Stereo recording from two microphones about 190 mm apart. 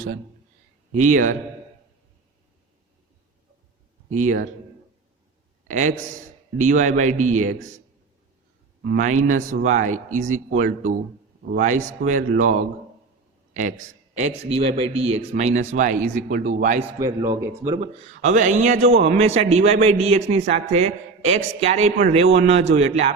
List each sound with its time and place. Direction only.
0.9 s a man's voice: 45° right (ahead or behind)
4.1 s a man's voice: 40° right (ahead or behind)
5.6 s a man's voice: 40° right (ahead or behind)
9.0 s a man's voice: 40° right (ahead or behind)
17.0 s speech: 15° right (ahead or behind)
18.1 s a man's voice: 40° right (ahead or behind)